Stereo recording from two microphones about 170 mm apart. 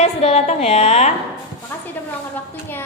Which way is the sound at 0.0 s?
40° left (ahead or behind).